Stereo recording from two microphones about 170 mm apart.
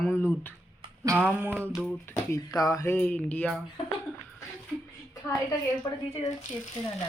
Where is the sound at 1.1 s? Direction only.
10° right (ahead or behind).